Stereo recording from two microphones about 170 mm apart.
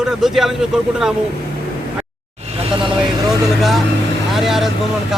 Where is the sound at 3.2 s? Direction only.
Centre (ahead or behind).